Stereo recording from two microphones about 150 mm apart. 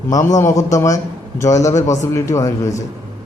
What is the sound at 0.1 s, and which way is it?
A man's voice, 20° left (ahead or behind).